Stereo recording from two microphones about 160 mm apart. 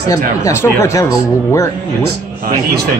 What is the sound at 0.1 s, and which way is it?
Speech, 20° left (ahead or behind).